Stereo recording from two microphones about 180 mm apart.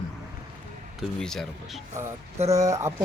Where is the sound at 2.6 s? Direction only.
20° right (ahead or behind).